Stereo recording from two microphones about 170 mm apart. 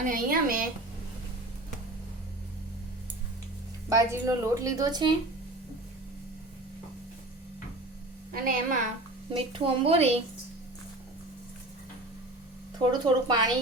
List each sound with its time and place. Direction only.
0.1 s a woman's voice: 55° right (ahead or behind)
3.8 s a woman's voice: 20° right (ahead or behind)
8.3 s a woman's voice: 55° right (ahead or behind)
9.3 s a woman's voice: 30° right (ahead or behind)
12.8 s a woman's voice: 25° right (ahead or behind)